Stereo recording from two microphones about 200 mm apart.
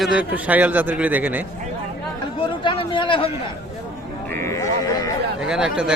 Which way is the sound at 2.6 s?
25° left (ahead or behind).